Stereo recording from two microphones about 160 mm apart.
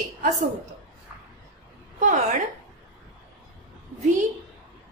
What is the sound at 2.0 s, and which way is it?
Speech, 50° right (ahead or behind).